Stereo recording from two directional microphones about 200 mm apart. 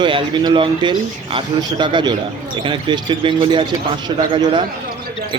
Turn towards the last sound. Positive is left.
turn(degrees=-25)  # may be behind; listen again after turning